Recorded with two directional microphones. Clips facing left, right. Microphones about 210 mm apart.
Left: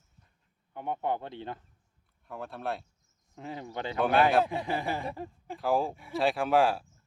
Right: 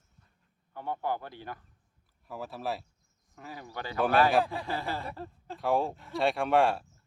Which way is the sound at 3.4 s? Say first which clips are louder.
Left 4 dB; 25° left (ahead or behind).